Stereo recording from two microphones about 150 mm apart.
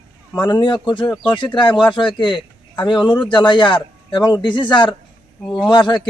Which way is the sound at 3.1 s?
5° left (ahead or behind).